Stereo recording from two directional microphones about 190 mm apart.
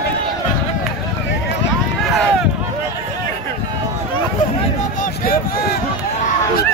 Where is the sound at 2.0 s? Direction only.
Centre (ahead or behind).